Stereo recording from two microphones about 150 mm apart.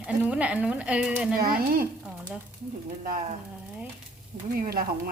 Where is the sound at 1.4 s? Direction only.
75° right (ahead or behind).